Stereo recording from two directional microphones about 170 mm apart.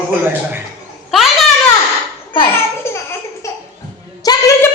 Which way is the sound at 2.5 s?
15° left (ahead or behind).